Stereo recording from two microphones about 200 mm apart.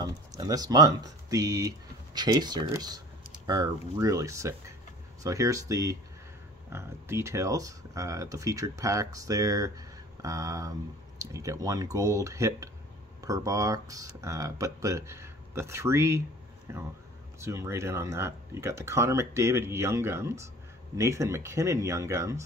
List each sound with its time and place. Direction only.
0.0 s speech: 20° right (ahead or behind)